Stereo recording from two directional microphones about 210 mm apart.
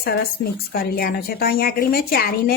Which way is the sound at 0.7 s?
45° left (ahead or behind).